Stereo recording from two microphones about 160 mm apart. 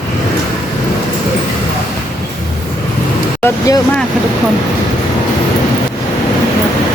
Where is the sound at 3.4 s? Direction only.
20° left (ahead or behind).